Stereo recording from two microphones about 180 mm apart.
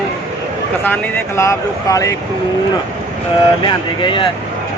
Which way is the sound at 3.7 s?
25° left (ahead or behind).